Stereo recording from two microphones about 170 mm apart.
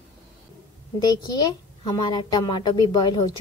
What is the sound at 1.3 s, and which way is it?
A woman's voice, 25° left (ahead or behind).